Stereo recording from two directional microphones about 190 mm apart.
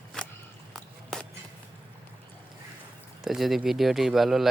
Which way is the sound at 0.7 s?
Centre (ahead or behind).